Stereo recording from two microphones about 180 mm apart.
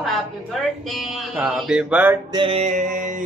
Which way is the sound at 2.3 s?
30° right (ahead or behind).